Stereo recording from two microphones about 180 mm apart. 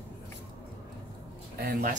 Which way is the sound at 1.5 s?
60° right (ahead or behind).